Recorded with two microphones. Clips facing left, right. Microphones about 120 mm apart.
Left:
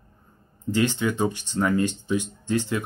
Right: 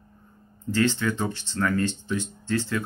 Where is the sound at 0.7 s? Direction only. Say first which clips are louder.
Left 1 dB; 15° left (ahead or behind).